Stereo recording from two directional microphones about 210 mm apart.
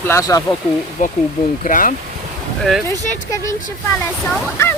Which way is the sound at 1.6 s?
40° left (ahead or behind).